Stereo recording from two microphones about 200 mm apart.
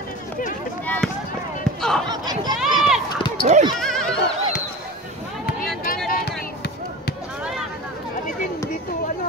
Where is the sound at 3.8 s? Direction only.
Centre (ahead or behind).